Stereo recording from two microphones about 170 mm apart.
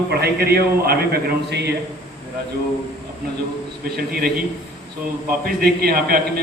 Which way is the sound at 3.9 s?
65° right (ahead or behind).